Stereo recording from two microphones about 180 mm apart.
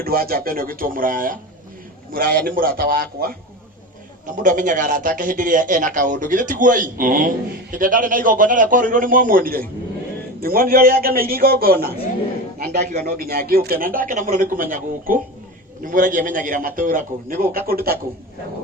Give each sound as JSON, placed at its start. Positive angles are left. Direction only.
{"t": 0.0, "sound": "a man's voice", "side_deg": -55}
{"t": 4.4, "sound": "a man's voice", "side_deg": -45}